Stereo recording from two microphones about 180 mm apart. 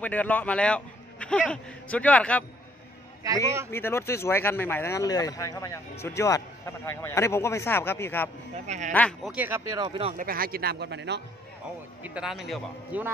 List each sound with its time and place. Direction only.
0.0 s a man's voice: 10° left (ahead or behind)
3.7 s speech: 15° left (ahead or behind)
8.6 s speech: 40° right (ahead or behind)
8.9 s speech: 5° left (ahead or behind)
9.3 s speech: 10° right (ahead or behind)
9.8 s speech: 30° right (ahead or behind)
10.1 s speech: 55° right (ahead or behind); by 11.2 s 70° right (ahead or behind)
12.0 s a man's voice: 5° right (ahead or behind)